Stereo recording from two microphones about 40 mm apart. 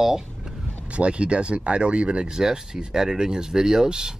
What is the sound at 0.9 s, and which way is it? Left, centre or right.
Speech, right.